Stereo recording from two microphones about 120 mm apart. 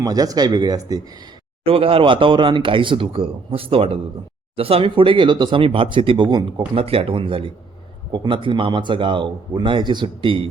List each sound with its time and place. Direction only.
0.0 s speech: 30° right (ahead or behind)
1.6 s speech: 50° right (ahead or behind)
6.7 s speech: 50° right (ahead or behind)